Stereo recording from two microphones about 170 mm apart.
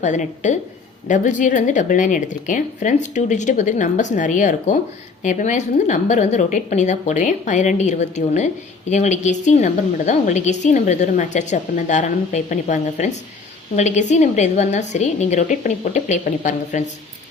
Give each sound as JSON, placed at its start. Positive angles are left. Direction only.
{"t": 0.0, "sound": "a woman's voice", "side_deg": 45}